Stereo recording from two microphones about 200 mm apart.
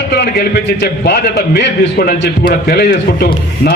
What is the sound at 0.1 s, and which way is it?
A man's voice, 55° left (ahead or behind).